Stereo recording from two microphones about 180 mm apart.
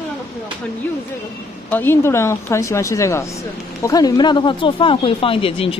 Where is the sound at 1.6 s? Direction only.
10° left (ahead or behind).